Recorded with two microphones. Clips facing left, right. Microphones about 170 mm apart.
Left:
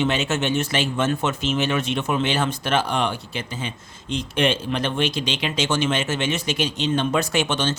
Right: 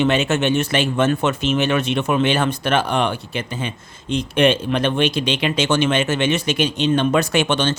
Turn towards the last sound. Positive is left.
turn(degrees=-65)  # may be behind; listen again after turning